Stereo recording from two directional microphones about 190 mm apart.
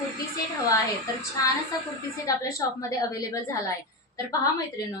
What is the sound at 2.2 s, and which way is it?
A woman's voice, 20° left (ahead or behind).